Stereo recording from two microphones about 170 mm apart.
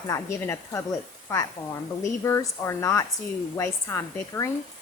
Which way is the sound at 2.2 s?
20° left (ahead or behind).